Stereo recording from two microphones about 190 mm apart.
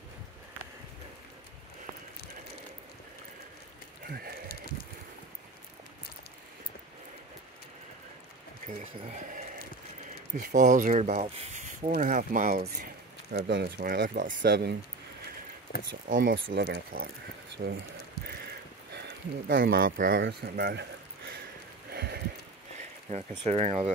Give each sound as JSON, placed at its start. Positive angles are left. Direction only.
{"t": 10.3, "sound": "speech", "side_deg": -40}
{"t": 11.9, "sound": "speech", "side_deg": -45}
{"t": 13.3, "sound": "speech", "side_deg": -60}
{"t": 14.4, "sound": "speech", "side_deg": -65}
{"t": 16.1, "sound": "speech", "side_deg": -45}
{"t": 16.4, "sound": "speech", "side_deg": -75}
{"t": 16.9, "sound": "speech", "side_deg": -50}
{"t": 17.6, "sound": "speech", "side_deg": -70}
{"t": 18.9, "sound": "speech", "side_deg": -65}
{"t": 20.1, "sound": "speech", "side_deg": -65}
{"t": 21.9, "sound": "a sound", "side_deg": -55}
{"t": 23.0, "sound": "speech", "side_deg": -35}